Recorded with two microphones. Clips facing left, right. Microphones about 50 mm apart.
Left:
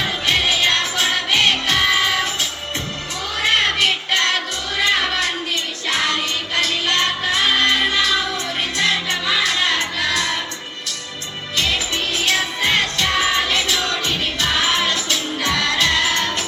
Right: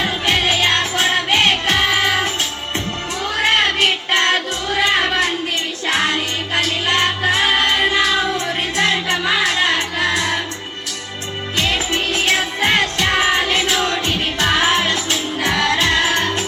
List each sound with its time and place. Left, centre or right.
0.0 s music: right
11.5 s music: right